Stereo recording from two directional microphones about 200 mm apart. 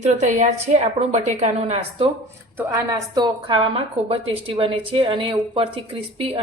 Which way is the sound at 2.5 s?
15° right (ahead or behind).